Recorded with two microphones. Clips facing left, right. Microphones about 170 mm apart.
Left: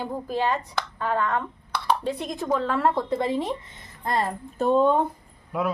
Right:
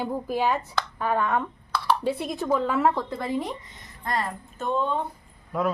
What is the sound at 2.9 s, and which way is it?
Speech, 15° left (ahead or behind).